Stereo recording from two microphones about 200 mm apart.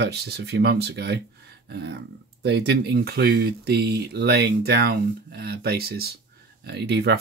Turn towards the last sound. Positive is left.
turn(degrees=-55)  # may be behind; listen again after turning